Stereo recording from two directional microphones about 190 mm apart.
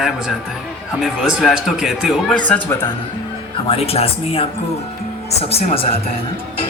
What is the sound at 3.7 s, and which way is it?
Speech, 30° left (ahead or behind).